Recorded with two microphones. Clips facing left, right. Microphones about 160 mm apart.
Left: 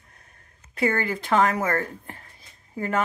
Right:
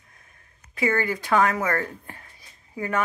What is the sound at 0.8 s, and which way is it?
Speech, 30° left (ahead or behind).